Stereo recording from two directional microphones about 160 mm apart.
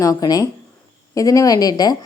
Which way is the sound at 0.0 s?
20° left (ahead or behind).